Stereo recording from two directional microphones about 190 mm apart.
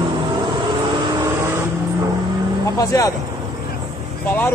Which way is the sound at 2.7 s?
15° left (ahead or behind).